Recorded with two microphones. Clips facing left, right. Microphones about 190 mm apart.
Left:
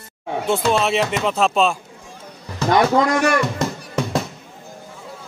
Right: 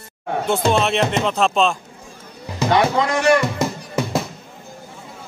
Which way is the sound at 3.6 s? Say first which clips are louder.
Right 1 dB; 5° right (ahead or behind).